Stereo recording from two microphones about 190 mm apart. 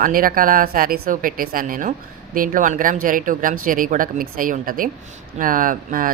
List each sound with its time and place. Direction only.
0.0 s speech: 50° right (ahead or behind)